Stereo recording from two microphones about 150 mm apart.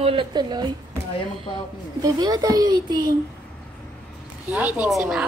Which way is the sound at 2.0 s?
25° right (ahead or behind).